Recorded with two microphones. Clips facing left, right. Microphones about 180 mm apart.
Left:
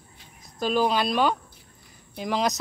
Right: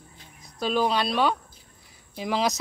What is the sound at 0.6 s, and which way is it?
Speech, centre (ahead or behind).